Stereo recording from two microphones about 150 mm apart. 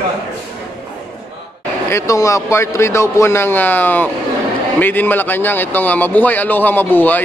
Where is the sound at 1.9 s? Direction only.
20° left (ahead or behind).